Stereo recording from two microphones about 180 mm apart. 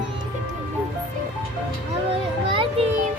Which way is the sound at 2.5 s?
30° right (ahead or behind).